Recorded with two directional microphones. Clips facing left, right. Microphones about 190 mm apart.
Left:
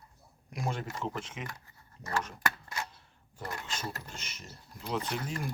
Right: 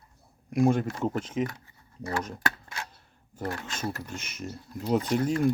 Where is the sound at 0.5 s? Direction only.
50° right (ahead or behind).